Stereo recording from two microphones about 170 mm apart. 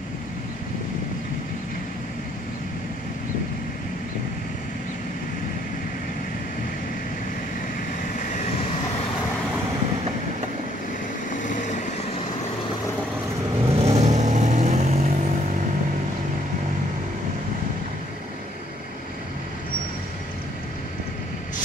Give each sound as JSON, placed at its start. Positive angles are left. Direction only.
{"t": 8.2, "sound": "vehicle", "side_deg": 45}
{"t": 11.4, "sound": "vehicle", "side_deg": 45}
{"t": 13.7, "sound": "vehicle", "side_deg": -40}